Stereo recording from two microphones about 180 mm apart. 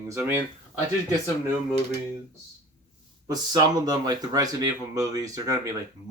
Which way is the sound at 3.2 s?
20° right (ahead or behind).